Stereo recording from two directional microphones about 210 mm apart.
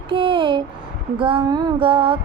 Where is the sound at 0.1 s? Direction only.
25° right (ahead or behind).